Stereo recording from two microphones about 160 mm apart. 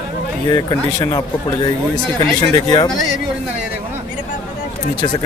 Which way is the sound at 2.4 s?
25° left (ahead or behind).